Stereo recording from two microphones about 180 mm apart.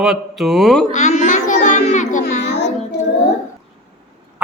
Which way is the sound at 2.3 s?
40° left (ahead or behind).